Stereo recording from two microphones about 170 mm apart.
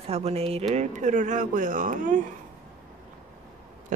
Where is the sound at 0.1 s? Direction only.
40° right (ahead or behind).